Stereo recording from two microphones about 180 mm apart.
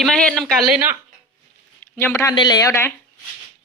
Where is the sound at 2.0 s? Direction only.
10° left (ahead or behind).